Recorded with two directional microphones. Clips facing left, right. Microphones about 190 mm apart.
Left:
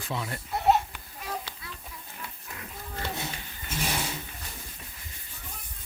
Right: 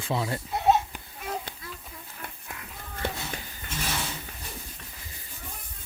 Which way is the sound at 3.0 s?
55° right (ahead or behind).